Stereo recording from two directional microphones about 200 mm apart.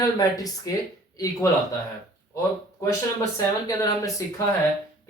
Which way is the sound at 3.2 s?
15° left (ahead or behind).